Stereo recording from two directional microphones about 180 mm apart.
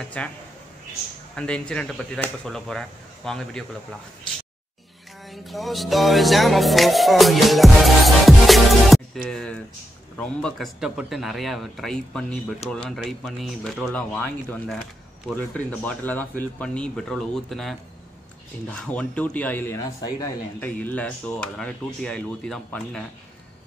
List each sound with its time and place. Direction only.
0.0 s a man's voice: 5° left (ahead or behind)
1.3 s speech: 5° left (ahead or behind)
5.3 s music: centre (ahead or behind)
9.3 s a man's voice: 5° left (ahead or behind)